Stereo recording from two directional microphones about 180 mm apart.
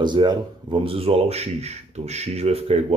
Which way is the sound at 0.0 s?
25° right (ahead or behind).